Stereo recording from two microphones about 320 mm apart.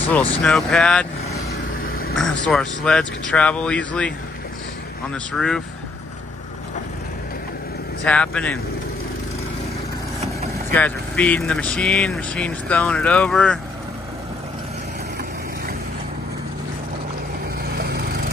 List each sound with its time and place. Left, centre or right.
0.4 s speech: centre
1.9 s vehicle: left
2.1 s speech: centre
5.1 s speech: centre
8.0 s speech: centre
10.7 s speech: centre
17.6 s vehicle: right